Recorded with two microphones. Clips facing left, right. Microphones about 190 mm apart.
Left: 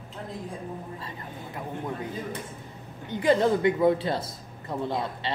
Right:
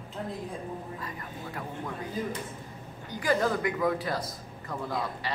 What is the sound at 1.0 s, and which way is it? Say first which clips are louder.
Speech: even; 25° left (ahead or behind).